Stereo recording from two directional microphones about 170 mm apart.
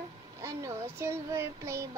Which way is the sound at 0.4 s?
15° right (ahead or behind).